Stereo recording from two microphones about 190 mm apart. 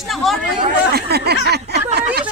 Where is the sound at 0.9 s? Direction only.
55° right (ahead or behind).